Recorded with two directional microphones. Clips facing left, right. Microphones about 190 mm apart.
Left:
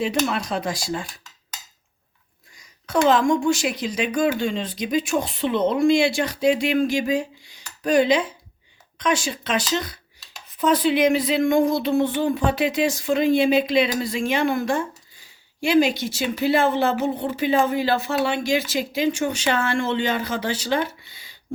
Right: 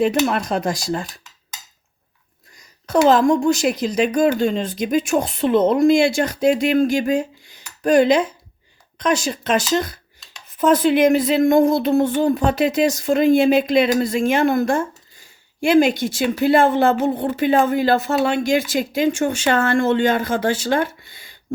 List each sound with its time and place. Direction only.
0.3 s speech: 50° right (ahead or behind)
3.1 s speech: 40° right (ahead or behind)